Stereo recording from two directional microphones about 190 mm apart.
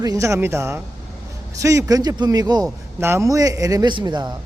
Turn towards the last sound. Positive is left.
turn(degrees=-20)  # may be behind; listen again after turning